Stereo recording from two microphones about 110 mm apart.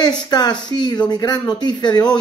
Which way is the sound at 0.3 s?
40° left (ahead or behind).